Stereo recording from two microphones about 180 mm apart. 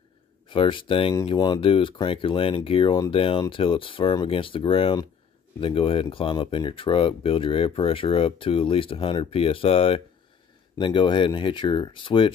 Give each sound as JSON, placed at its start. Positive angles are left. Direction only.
{"t": 0.5, "sound": "speech", "side_deg": 30}